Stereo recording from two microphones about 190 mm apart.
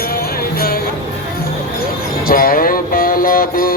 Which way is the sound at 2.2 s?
50° left (ahead or behind).